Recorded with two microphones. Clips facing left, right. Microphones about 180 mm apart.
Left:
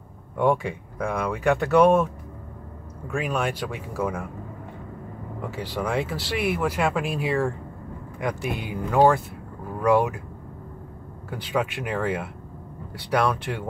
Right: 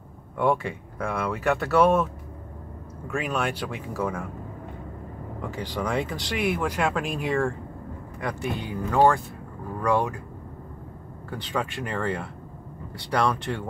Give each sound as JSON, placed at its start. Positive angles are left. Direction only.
{"t": 0.4, "sound": "speech", "side_deg": 10}
{"t": 3.2, "sound": "speech", "side_deg": 10}
{"t": 5.4, "sound": "speech", "side_deg": 5}
{"t": 8.2, "sound": "speech", "side_deg": 15}
{"t": 11.2, "sound": "speech", "side_deg": 5}